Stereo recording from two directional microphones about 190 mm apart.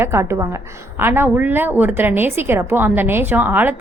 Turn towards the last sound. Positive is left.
turn(degrees=-10)  # may be behind; listen again after turning